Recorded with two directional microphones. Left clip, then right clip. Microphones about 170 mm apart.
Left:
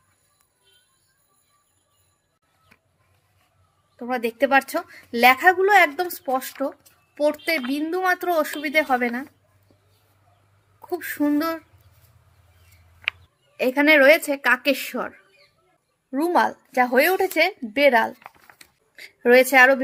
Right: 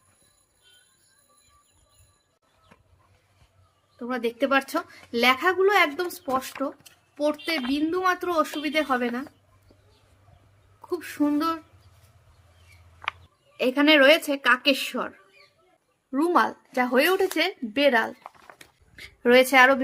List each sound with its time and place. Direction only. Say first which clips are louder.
3.9 s a woman's voice: left 3 dB; 30° left (ahead or behind)
10.8 s a sound: left 2 dB; 25° left (ahead or behind)
13.6 s a woman's voice: left 2 dB; 20° left (ahead or behind)
16.1 s a woman's voice: left 2 dB; 15° left (ahead or behind)
18.9 s a woman's voice: left 3 dB; centre (ahead or behind)